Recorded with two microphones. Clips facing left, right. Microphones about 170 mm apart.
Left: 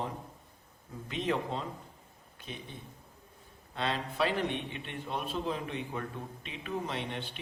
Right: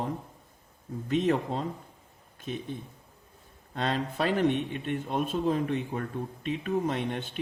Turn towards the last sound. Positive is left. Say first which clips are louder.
# right 6 dB
turn(degrees=-45)  # may be behind; listen again after turning